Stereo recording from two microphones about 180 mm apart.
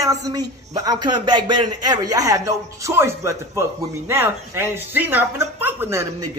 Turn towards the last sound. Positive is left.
turn(degrees=-15)  # may be behind; listen again after turning